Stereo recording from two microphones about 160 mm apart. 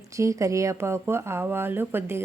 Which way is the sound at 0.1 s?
20° right (ahead or behind).